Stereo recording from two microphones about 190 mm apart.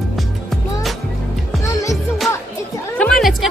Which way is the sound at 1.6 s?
15° left (ahead or behind).